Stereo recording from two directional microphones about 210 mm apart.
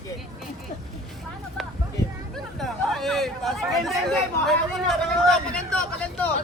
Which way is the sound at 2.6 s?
Centre (ahead or behind).